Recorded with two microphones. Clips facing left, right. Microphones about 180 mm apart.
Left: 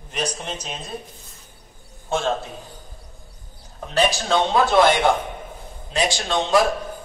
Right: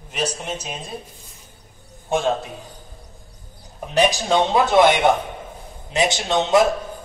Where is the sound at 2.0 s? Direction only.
15° right (ahead or behind).